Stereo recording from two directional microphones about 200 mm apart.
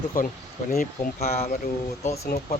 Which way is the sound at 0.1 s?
45° left (ahead or behind).